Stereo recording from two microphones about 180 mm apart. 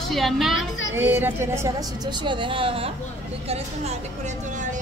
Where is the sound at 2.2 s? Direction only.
30° right (ahead or behind).